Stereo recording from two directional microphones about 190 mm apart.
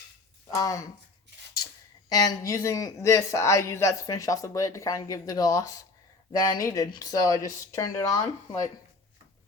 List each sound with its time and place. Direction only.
0.5 s a man's voice: 15° left (ahead or behind)
2.0 s a man's voice: 20° left (ahead or behind)